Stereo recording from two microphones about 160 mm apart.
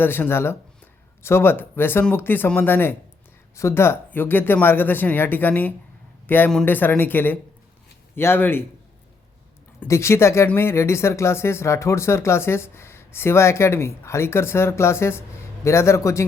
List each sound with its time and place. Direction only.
0.0 s speech: 15° left (ahead or behind)
9.8 s speech: 15° left (ahead or behind)